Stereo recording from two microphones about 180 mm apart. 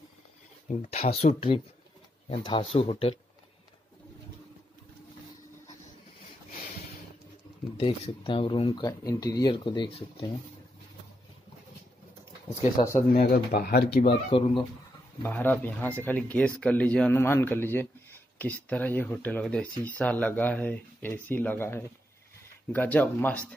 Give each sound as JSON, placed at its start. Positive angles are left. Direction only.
{"t": 0.7, "sound": "speech", "side_deg": 40}
{"t": 7.8, "sound": "speech", "side_deg": 30}
{"t": 13.1, "sound": "speech", "side_deg": 55}
{"t": 14.0, "sound": "speech", "side_deg": 30}
{"t": 15.2, "sound": "speech", "side_deg": 10}